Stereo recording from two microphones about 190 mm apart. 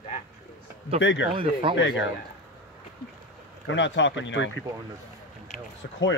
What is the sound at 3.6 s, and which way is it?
Speech, 75° left (ahead or behind).